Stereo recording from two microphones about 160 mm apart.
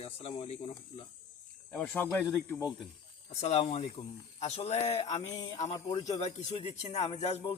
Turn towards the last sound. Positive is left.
turn(degrees=45)  # may be behind; listen again after turning